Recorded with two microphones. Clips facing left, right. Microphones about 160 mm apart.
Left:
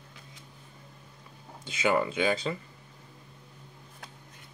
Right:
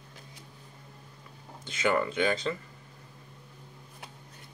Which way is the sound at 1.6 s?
10° left (ahead or behind).